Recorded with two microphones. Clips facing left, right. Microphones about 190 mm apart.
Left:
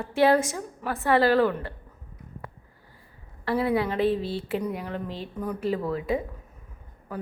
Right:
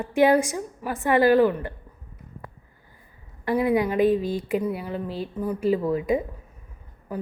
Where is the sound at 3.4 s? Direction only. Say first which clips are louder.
Right 3 dB; 15° right (ahead or behind).